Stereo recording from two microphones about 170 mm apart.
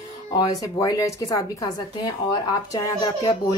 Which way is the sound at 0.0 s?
20° left (ahead or behind).